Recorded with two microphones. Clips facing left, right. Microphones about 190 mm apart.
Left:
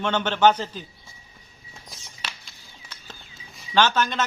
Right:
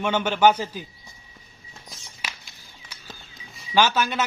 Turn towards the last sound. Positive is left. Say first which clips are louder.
# even
turn(degrees=-10)  # may be behind; listen again after turning